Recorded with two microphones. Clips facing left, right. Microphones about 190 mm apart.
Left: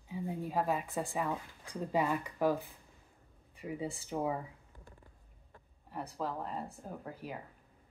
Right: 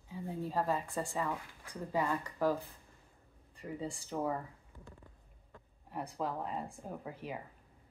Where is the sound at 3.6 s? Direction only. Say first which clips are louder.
Left 2 dB; 10° left (ahead or behind).